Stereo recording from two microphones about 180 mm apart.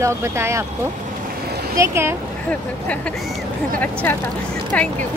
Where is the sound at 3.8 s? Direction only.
10° left (ahead or behind).